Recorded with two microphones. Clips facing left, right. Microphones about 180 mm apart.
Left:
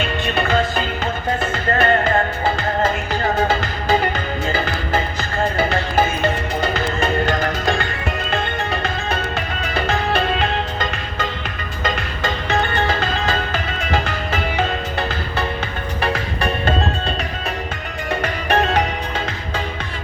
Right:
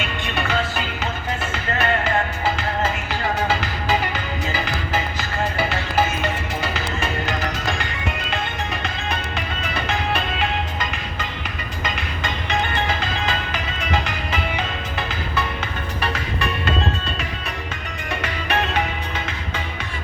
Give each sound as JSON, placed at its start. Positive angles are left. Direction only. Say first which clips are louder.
{"t": 0.0, "sound": "music", "louder": "left 5 dB", "side_deg": 35}
{"t": 1.5, "sound": "music", "louder": "left 5 dB", "side_deg": 45}
{"t": 5.5, "sound": "music", "louder": "left 3 dB", "side_deg": 50}
{"t": 9.7, "sound": "music", "louder": "left 5 dB", "side_deg": 40}
{"t": 18.1, "sound": "music", "louder": "left 5 dB", "side_deg": 45}